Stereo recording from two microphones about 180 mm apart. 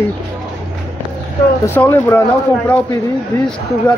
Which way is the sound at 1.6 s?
10° left (ahead or behind).